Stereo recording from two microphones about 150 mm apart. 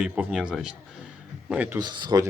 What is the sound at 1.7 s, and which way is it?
Speech, 25° right (ahead or behind).